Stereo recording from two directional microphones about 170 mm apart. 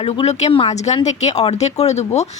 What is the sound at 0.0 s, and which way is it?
A woman's voice, 35° left (ahead or behind).